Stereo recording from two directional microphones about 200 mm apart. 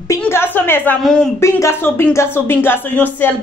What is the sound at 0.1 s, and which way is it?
Speech, 10° left (ahead or behind).